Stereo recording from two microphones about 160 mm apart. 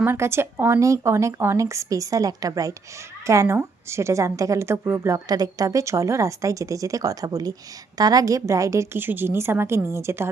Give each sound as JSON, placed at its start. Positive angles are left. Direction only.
{"t": 0.0, "sound": "a woman's voice", "side_deg": -15}